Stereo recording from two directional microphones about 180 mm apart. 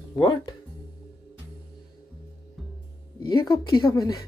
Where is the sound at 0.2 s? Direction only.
25° left (ahead or behind).